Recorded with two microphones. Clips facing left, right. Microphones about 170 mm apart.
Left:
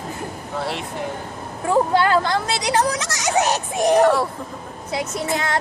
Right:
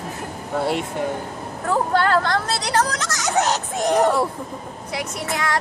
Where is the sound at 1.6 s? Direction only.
15° left (ahead or behind).